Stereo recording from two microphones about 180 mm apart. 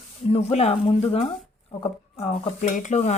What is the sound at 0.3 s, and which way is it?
Speech, 35° left (ahead or behind).